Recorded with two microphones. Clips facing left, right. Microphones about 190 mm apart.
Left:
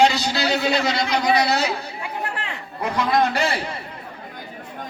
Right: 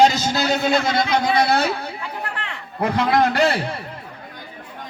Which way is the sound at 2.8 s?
60° right (ahead or behind).